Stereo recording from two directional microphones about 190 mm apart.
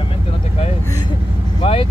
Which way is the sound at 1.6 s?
30° left (ahead or behind).